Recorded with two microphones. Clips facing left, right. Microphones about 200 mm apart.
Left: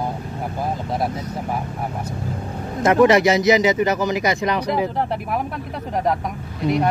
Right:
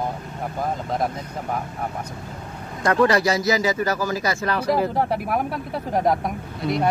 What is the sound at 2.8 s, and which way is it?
Speech, 20° left (ahead or behind).